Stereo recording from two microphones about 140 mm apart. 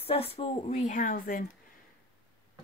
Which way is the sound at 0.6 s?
65° left (ahead or behind).